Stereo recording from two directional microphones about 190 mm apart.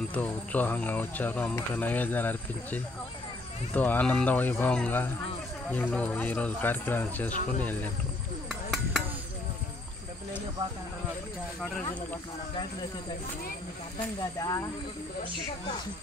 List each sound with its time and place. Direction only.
0.1 s speech: 10° left (ahead or behind)
8.5 s a sound: centre (ahead or behind)
11.6 s speech: 10° left (ahead or behind)
13.9 s speech: 20° left (ahead or behind)